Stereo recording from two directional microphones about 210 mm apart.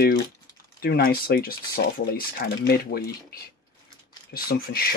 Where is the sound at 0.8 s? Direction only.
45° left (ahead or behind).